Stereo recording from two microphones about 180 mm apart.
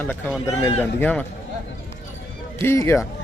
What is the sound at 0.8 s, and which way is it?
Speech, 10° left (ahead or behind).